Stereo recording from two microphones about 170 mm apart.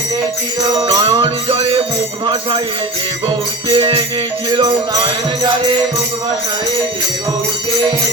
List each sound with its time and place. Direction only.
0.9 s music: 30° right (ahead or behind)
3.8 s music: 30° right (ahead or behind)